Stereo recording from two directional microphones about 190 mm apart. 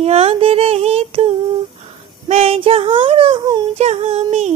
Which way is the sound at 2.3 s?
30° right (ahead or behind).